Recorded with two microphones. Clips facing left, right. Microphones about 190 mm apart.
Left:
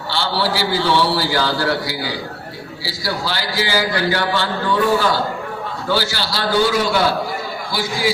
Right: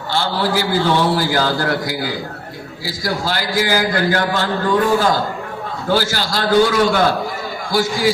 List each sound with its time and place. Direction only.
0.1 s a man's voice: 45° right (ahead or behind)